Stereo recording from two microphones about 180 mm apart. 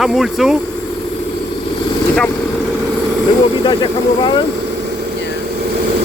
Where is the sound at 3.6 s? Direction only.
25° left (ahead or behind).